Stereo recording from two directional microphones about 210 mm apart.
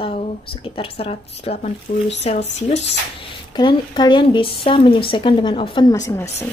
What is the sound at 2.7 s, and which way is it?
Speech, 55° left (ahead or behind).